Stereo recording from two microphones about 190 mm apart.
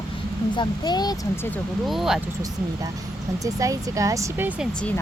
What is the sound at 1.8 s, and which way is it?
Speech, centre (ahead or behind).